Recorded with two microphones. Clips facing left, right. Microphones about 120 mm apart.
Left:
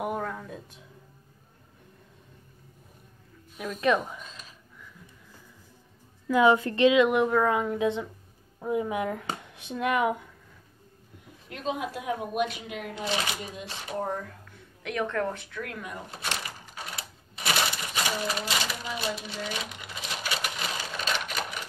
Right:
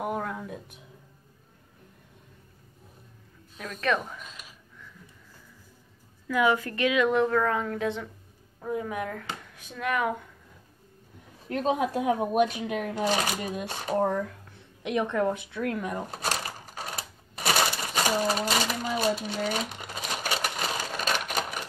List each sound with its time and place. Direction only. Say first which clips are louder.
0.0 s a sound: even; centre (ahead or behind)
3.5 s a woman's voice: left 3 dB; 10° left (ahead or behind)
4.2 s a sound: even; 10° right (ahead or behind)
6.2 s a woman's voice: left 4 dB; 25° left (ahead or behind)
11.4 s speech: right 6 dB; 35° right (ahead or behind)
14.8 s speech: right 3 dB; 20° right (ahead or behind)
15.6 s typewriter: right 9 dB; 35° right (ahead or behind)
18.2 s sewing machine: right 4 dB; 40° right (ahead or behind)